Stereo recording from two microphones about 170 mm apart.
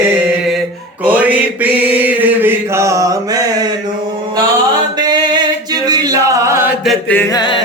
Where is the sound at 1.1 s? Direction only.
10° right (ahead or behind).